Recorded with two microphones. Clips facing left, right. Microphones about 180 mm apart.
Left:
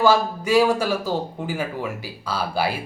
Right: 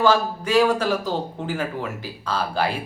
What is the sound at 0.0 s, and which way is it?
A man's voice, 10° left (ahead or behind).